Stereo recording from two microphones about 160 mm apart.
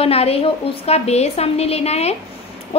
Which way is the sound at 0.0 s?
40° left (ahead or behind).